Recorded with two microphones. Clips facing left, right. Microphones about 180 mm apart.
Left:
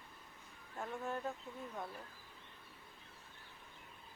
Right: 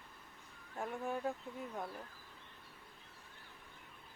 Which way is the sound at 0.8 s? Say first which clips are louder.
Right 2 dB; 15° right (ahead or behind).